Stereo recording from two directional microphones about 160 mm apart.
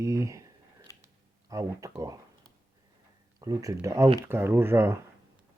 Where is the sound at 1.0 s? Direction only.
20° right (ahead or behind).